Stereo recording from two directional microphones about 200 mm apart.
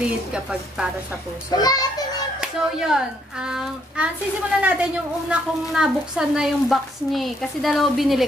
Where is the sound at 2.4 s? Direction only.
5° right (ahead or behind).